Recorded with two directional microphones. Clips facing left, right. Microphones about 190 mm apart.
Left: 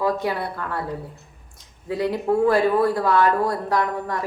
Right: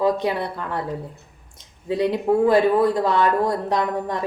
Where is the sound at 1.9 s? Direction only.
20° right (ahead or behind).